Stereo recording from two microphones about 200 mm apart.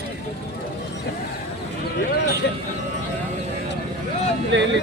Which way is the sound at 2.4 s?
60° left (ahead or behind).